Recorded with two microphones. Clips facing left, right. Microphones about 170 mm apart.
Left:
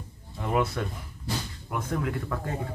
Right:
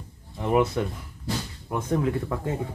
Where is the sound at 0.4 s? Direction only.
20° right (ahead or behind).